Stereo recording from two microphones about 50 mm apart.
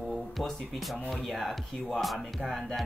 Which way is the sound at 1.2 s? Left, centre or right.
Centre.